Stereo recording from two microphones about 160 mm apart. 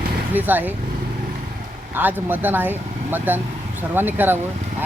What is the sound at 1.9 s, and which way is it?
Speech, 10° right (ahead or behind).